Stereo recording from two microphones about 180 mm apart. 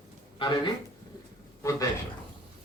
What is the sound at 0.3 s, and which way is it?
Speech, 25° left (ahead or behind).